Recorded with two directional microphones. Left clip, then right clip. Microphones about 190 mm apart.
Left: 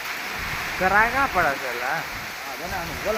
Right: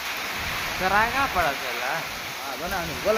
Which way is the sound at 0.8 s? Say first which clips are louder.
Left 3 dB; 25° left (ahead or behind).